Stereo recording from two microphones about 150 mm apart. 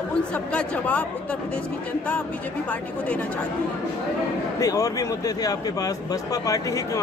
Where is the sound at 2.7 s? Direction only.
10° left (ahead or behind).